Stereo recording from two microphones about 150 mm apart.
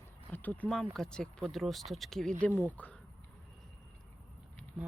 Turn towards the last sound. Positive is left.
turn(degrees=-5)  # may be behind; listen again after turning